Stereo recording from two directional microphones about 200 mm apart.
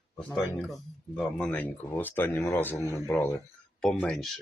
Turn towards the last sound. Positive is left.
turn(degrees=0)  # may be behind; listen again after turning